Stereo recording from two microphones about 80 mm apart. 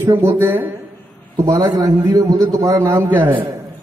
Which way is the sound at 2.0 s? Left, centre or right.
Right.